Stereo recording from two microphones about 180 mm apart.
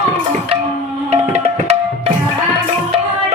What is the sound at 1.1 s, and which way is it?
Music, 35° right (ahead or behind).